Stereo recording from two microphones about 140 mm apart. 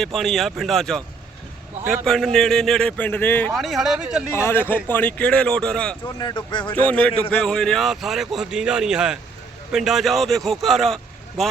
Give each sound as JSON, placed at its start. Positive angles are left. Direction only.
{"t": 0.0, "sound": "a man's voice", "side_deg": 0}
{"t": 3.5, "sound": "a man's voice", "side_deg": 0}
{"t": 4.4, "sound": "speech", "side_deg": 20}
{"t": 6.1, "sound": "speech", "side_deg": 30}
{"t": 6.7, "sound": "a man's voice", "side_deg": 10}